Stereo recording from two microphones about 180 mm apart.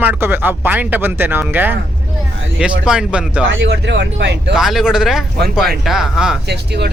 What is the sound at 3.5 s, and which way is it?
Speech, 85° right.